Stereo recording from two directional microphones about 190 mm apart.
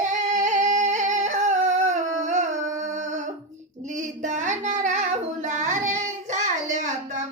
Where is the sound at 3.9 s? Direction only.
40° right (ahead or behind).